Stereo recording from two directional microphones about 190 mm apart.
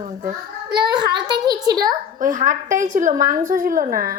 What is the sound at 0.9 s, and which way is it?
A child's voice, 20° right (ahead or behind).